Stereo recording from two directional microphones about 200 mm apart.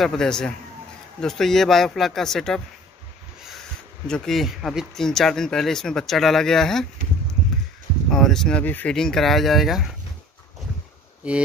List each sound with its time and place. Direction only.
0.0 s speech: centre (ahead or behind)
4.1 s speech: centre (ahead or behind)
8.1 s speech: centre (ahead or behind)